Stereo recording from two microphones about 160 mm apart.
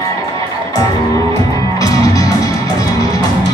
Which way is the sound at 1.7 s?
20° left (ahead or behind).